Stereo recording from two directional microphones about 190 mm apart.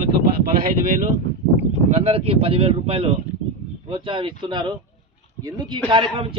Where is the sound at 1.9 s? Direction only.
35° right (ahead or behind).